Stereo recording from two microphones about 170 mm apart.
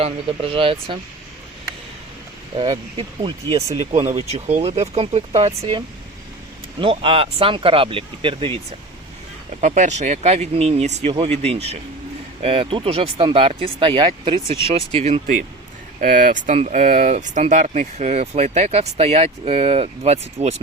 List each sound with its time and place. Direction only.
0.0 s speech: 35° right (ahead or behind)
2.6 s speech: 30° right (ahead or behind)
6.7 s speech: 30° right (ahead or behind)
9.6 s speech: 45° right (ahead or behind)
16.0 s speech: 55° right (ahead or behind)